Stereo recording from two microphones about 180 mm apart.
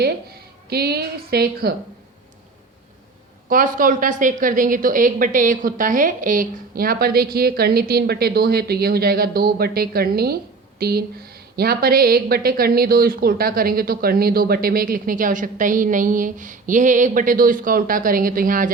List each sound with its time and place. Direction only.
0.7 s speech: 60° right (ahead or behind)
3.5 s a woman's voice: 50° right (ahead or behind)